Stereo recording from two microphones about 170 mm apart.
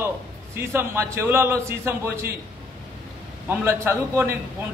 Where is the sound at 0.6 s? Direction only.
15° right (ahead or behind).